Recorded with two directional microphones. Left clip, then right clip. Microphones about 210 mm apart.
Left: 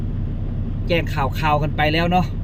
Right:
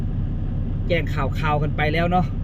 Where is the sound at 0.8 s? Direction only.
25° left (ahead or behind).